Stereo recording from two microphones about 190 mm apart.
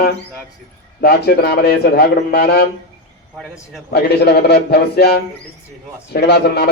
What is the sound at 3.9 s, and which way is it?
A man's voice, 60° left (ahead or behind).